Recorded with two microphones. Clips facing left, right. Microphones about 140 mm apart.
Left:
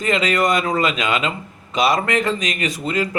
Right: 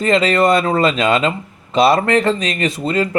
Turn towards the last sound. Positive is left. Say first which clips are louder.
# right 4 dB
turn(degrees=-30)  # may be behind; listen again after turning